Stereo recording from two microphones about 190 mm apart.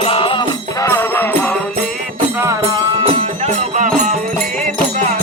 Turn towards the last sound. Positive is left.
turn(degrees=-40)  # may be behind; listen again after turning